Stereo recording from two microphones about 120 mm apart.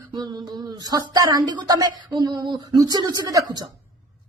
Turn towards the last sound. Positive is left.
turn(degrees=-35)  # may be behind; listen again after turning